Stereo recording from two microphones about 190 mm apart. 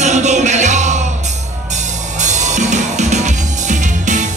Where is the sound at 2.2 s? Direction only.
40° right (ahead or behind).